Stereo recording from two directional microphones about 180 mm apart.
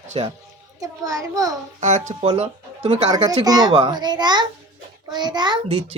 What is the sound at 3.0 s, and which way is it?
A child's voice, 20° right (ahead or behind).